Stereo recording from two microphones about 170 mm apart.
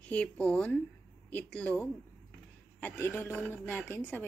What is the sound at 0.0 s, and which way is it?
A woman's voice, 10° left (ahead or behind).